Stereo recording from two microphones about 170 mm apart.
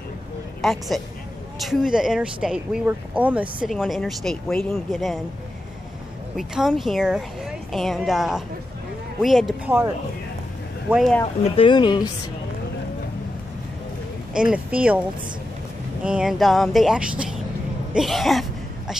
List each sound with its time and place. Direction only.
0.6 s a woman's voice: centre (ahead or behind)
6.3 s speech: 5° right (ahead or behind)
10.9 s speech: centre (ahead or behind)
11.5 s a woman's voice: 30° left (ahead or behind)
14.3 s speech: 5° right (ahead or behind)
16.0 s speech: 5° right (ahead or behind)